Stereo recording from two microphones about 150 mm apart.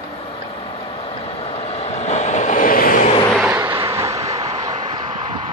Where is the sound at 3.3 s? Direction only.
10° right (ahead or behind).